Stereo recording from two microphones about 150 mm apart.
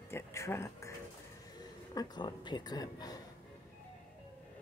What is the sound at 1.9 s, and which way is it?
A woman's voice, 30° left (ahead or behind).